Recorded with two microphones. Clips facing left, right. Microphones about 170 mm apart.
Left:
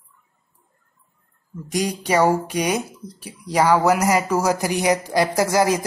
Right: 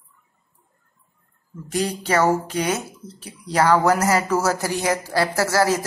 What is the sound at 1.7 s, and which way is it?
Speech, 15° left (ahead or behind).